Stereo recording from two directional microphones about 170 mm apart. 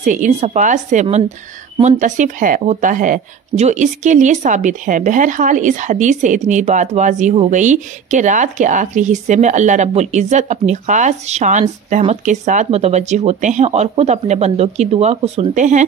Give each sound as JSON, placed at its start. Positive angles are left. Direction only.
{"t": 0.0, "sound": "speech", "side_deg": -45}